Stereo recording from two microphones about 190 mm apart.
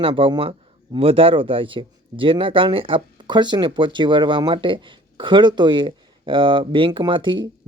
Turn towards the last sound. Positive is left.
turn(degrees=-25)  # may be behind; listen again after turning